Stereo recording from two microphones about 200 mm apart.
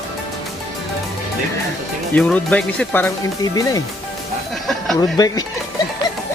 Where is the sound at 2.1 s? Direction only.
5° left (ahead or behind).